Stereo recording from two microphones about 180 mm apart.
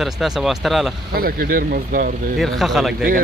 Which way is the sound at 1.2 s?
55° right (ahead or behind).